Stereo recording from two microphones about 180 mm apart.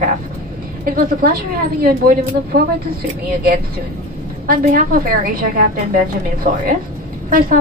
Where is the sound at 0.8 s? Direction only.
55° right (ahead or behind).